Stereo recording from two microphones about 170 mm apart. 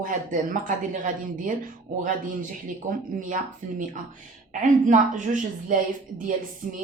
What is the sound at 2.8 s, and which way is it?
Speech, 45° right (ahead or behind).